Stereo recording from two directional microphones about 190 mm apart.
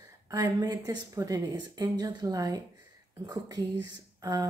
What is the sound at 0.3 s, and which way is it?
A woman's voice, 20° right (ahead or behind).